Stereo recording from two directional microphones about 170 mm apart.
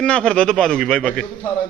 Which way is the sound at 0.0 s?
5° left (ahead or behind).